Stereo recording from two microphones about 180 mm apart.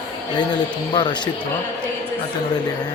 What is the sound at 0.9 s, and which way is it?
Speech, 25° left (ahead or behind).